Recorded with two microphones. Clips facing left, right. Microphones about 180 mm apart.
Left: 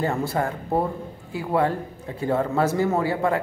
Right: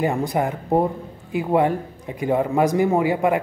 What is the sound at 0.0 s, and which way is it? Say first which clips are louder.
Speech: right 3 dB; 15° right (ahead or behind).